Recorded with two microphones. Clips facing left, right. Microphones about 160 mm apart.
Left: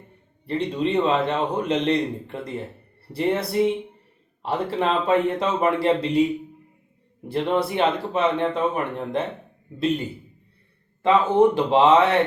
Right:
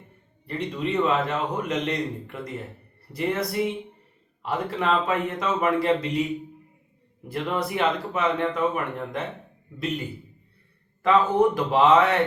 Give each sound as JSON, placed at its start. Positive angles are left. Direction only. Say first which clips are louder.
{"t": 0.4, "sound": "a man's voice", "louder": "left 5 dB", "side_deg": 30}
{"t": 7.3, "sound": "a man's voice", "louder": "left 5 dB", "side_deg": 30}
{"t": 11.0, "sound": "a man's voice", "louder": "left 3 dB", "side_deg": 25}